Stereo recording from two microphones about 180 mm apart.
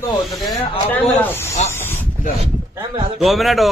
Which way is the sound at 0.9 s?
10° left (ahead or behind).